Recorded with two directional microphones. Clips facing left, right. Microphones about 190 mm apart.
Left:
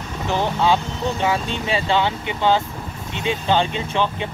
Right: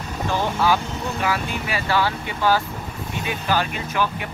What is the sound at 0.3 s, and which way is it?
Speech, 20° left (ahead or behind).